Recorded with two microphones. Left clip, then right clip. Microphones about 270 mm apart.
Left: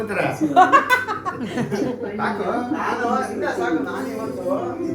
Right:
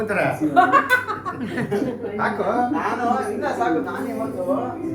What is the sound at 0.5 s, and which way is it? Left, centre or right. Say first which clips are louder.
Speech: left 2 dB; left.